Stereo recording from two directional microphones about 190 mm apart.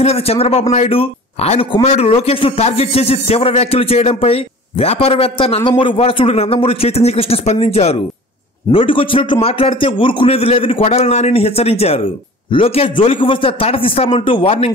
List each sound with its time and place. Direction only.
0.0 s a man's voice: 30° left (ahead or behind)